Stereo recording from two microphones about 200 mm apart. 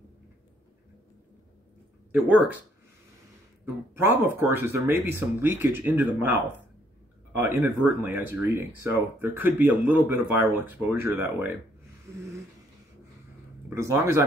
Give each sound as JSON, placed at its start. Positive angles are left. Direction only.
{"t": 2.1, "sound": "speech", "side_deg": -5}
{"t": 3.9, "sound": "speech", "side_deg": -10}
{"t": 7.3, "sound": "speech", "side_deg": -10}
{"t": 13.7, "sound": "speech", "side_deg": -15}